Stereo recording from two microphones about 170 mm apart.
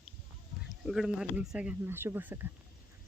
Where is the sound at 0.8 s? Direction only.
Centre (ahead or behind).